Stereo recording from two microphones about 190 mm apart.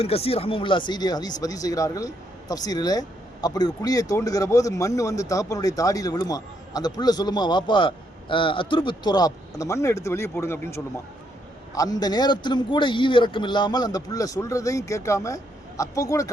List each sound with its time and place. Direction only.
0.0 s speech: 30° left (ahead or behind)